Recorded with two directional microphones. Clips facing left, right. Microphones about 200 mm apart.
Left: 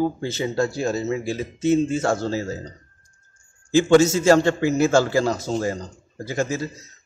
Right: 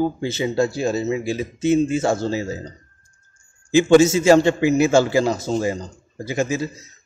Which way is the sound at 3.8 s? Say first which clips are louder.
Right 2 dB; 10° right (ahead or behind).